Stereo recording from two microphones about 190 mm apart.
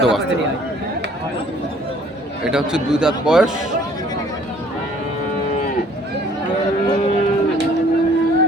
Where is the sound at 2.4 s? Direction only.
5° right (ahead or behind).